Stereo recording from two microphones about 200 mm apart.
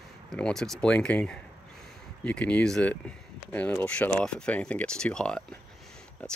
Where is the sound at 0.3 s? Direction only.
Centre (ahead or behind).